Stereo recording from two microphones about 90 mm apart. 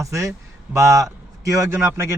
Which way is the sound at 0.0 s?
35° right (ahead or behind).